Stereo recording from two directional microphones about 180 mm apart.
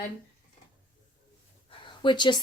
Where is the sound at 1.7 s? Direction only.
25° left (ahead or behind).